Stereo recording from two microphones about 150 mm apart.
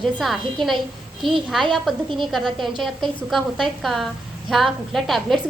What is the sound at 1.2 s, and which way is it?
Speech, 35° right (ahead or behind).